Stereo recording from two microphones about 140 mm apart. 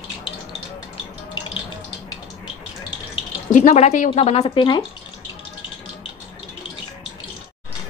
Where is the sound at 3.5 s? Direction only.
55° left (ahead or behind).